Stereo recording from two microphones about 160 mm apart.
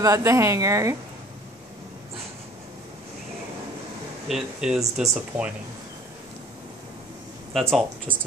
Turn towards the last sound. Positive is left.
turn(degrees=0)  # may be behind; listen again after turning